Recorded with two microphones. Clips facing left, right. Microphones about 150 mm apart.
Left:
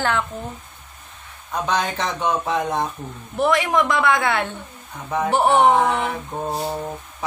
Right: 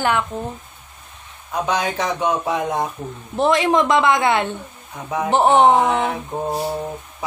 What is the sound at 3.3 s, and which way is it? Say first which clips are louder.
A man's voice: right 2 dB; 25° right (ahead or behind).